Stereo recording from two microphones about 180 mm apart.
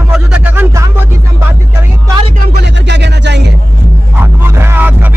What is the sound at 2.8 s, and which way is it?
Music, 70° right (ahead or behind).